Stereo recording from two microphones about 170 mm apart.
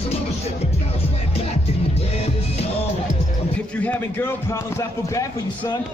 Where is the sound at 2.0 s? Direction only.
35° left (ahead or behind).